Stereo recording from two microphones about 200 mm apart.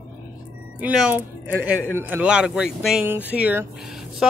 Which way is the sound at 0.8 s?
5° right (ahead or behind).